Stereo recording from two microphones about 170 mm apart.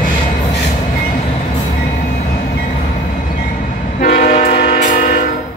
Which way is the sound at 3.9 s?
50° left (ahead or behind).